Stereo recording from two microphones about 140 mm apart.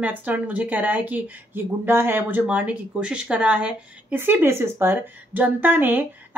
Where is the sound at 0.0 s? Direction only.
10° right (ahead or behind).